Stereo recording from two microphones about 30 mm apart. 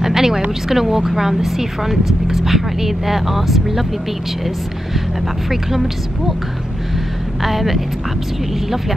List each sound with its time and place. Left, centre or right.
0.0 s a sound: centre
0.7 s speech: centre
5.5 s speech: centre
7.4 s speech: centre